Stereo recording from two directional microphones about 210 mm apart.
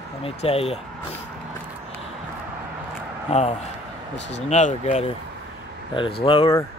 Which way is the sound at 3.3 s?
30° left (ahead or behind).